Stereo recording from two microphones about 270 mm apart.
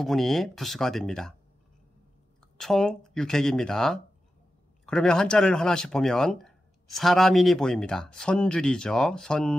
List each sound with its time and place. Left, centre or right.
0.0 s speech: centre
2.5 s speech: centre